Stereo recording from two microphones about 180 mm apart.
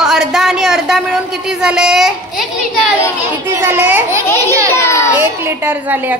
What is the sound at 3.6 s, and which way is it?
A woman's voice, 10° right (ahead or behind).